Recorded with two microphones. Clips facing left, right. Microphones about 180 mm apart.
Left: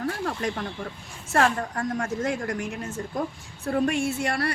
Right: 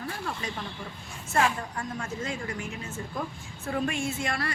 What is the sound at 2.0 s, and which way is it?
Speech, 75° left (ahead or behind).